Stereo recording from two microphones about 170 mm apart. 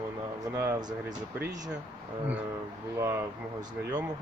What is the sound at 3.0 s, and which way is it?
Speech, 15° right (ahead or behind).